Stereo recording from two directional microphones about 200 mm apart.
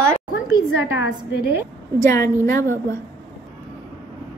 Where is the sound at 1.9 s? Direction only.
15° left (ahead or behind).